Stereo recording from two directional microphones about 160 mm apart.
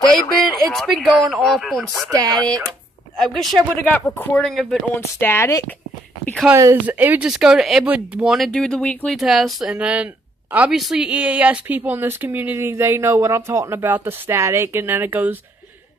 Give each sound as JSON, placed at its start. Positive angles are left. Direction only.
{"t": 0.6, "sound": "speech", "side_deg": 0}
{"t": 2.0, "sound": "speech", "side_deg": -20}
{"t": 2.3, "sound": "speech", "side_deg": 5}
{"t": 4.9, "sound": "speech", "side_deg": 15}
{"t": 6.5, "sound": "speech", "side_deg": -15}